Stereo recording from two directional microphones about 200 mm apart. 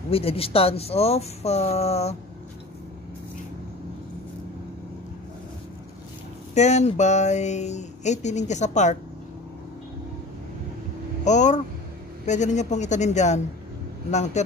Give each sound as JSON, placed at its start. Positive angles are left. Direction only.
{"t": 0.1, "sound": "speech", "side_deg": 30}
{"t": 6.5, "sound": "speech", "side_deg": 35}
{"t": 11.2, "sound": "speech", "side_deg": 35}